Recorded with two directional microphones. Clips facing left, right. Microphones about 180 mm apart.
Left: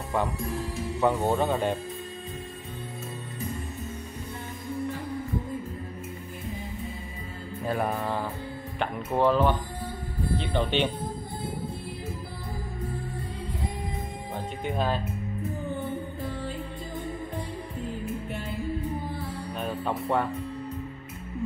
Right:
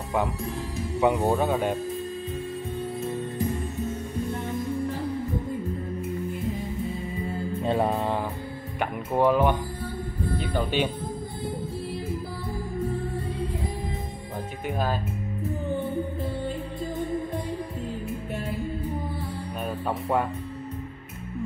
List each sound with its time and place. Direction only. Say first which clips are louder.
1.0 s speech: right 2 dB; 5° right (ahead or behind)
7.6 s mantra: right 3 dB; 25° right (ahead or behind)
8.7 s speech: right 2 dB; 10° right (ahead or behind)
14.7 s speech: even; 5° right (ahead or behind)